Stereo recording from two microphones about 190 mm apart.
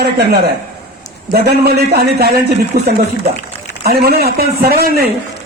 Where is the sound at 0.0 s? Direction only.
60° right (ahead or behind).